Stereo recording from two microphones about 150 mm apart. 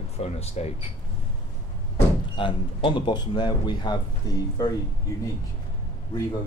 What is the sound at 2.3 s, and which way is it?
Speech, 35° left (ahead or behind).